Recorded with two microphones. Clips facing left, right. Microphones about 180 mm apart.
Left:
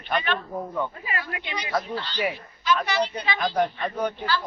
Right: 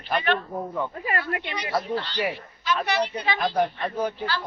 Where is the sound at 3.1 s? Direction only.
5° right (ahead or behind).